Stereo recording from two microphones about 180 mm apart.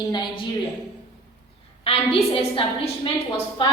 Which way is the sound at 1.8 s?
30° left (ahead or behind).